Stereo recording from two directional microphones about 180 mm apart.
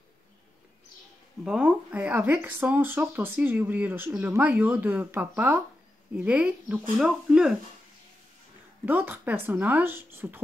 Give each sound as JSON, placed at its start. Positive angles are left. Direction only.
{"t": 1.4, "sound": "speech", "side_deg": -5}
{"t": 8.8, "sound": "speech", "side_deg": -10}